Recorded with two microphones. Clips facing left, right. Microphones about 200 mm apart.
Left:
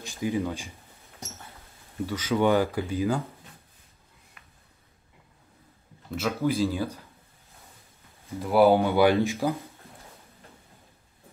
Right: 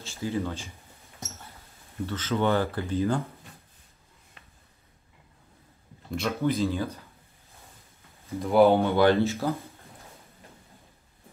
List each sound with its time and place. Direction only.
0.0 s speech: 15° left (ahead or behind)
2.0 s speech: 10° left (ahead or behind)
6.1 s speech: 5° left (ahead or behind)
8.4 s speech: 5° left (ahead or behind)